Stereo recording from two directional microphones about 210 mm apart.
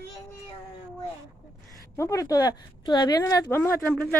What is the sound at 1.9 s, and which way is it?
A woman's voice, 15° left (ahead or behind).